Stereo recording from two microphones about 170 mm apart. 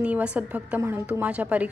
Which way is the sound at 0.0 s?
5° right (ahead or behind).